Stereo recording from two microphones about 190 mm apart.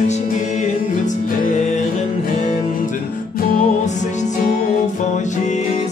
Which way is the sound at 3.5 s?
40° left (ahead or behind).